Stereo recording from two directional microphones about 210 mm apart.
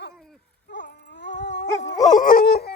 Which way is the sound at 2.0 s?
40° left (ahead or behind).